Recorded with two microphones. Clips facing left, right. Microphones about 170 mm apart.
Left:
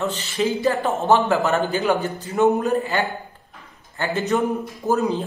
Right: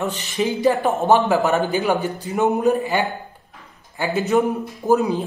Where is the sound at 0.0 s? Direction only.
15° right (ahead or behind).